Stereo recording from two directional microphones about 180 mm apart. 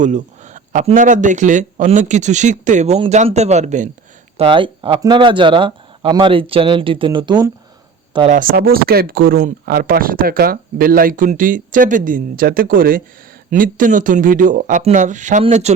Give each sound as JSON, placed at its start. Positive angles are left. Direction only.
{"t": 0.0, "sound": "speech", "side_deg": -45}
{"t": 4.4, "sound": "speech", "side_deg": -30}
{"t": 8.3, "sound": "speech", "side_deg": -50}